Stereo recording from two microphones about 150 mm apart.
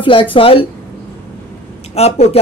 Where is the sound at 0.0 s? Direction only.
35° left (ahead or behind).